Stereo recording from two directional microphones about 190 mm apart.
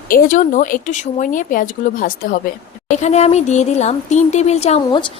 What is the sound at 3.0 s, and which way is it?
A woman's voice, 35° left (ahead or behind).